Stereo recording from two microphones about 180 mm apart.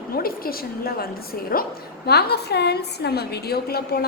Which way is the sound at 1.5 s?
50° left (ahead or behind).